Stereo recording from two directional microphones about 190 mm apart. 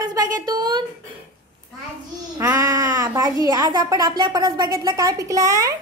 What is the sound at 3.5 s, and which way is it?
A woman's voice, 20° right (ahead or behind).